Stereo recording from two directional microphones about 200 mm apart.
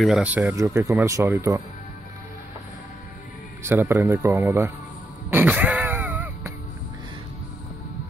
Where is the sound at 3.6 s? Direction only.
10° right (ahead or behind).